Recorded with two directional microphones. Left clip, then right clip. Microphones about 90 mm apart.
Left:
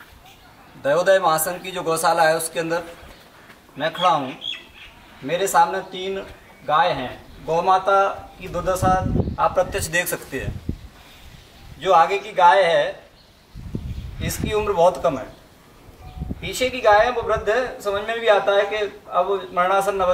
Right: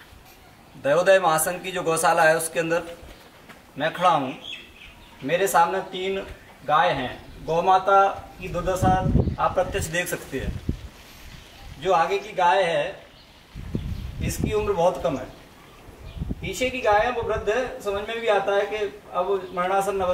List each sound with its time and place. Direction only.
0.8 s a man's voice: centre (ahead or behind)
11.8 s a man's voice: 15° left (ahead or behind)
14.2 s a man's voice: 15° left (ahead or behind)
16.4 s a man's voice: 15° left (ahead or behind)